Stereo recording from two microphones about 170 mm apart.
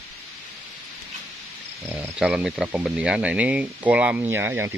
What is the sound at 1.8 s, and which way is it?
Speech, 10° right (ahead or behind).